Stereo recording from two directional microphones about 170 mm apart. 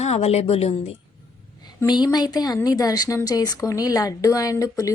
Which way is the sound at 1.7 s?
25° left (ahead or behind).